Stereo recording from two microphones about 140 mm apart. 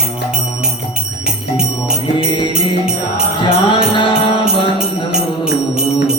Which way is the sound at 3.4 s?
40° left (ahead or behind).